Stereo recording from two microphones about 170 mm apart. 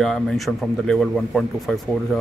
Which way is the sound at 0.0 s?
Centre (ahead or behind).